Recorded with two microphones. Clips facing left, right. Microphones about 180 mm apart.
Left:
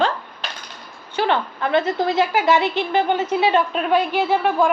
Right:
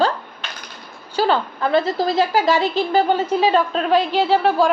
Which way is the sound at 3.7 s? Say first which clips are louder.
Right 1 dB; 10° left (ahead or behind).